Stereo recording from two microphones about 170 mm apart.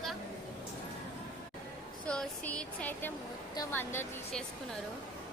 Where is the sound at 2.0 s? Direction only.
5° left (ahead or behind).